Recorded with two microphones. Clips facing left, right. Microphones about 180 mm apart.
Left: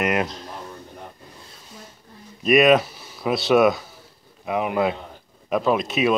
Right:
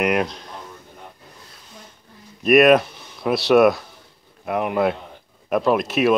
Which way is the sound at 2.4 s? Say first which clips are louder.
Right 2 dB; centre (ahead or behind).